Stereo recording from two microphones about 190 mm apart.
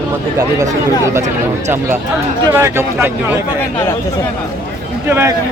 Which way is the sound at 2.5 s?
10° right (ahead or behind).